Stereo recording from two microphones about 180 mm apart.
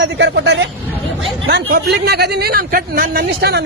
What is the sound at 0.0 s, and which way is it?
Speech, 75° right (ahead or behind).